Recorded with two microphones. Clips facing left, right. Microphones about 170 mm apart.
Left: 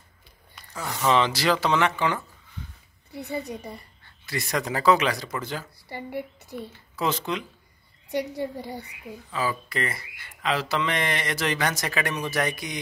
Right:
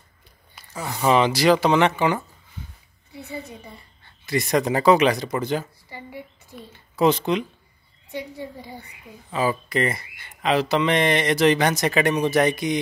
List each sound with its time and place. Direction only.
0.6 s speech: 10° right (ahead or behind)
3.1 s a woman's voice: 40° left (ahead or behind)
4.3 s speech: 20° right (ahead or behind)
5.9 s a woman's voice: 60° left (ahead or behind)
7.0 s speech: 20° right (ahead or behind)
8.4 s a woman's voice: 70° left (ahead or behind)
9.3 s speech: 20° right (ahead or behind)